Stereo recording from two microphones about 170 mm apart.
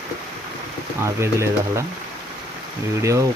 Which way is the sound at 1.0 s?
15° right (ahead or behind).